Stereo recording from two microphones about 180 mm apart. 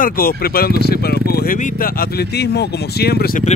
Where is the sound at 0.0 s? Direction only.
55° left (ahead or behind).